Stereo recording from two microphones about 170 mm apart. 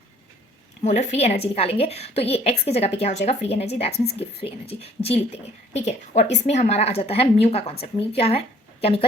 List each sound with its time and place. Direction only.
0.8 s speech: 40° left (ahead or behind)